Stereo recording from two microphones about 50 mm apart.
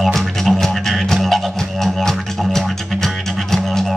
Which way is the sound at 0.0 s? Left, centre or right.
Centre.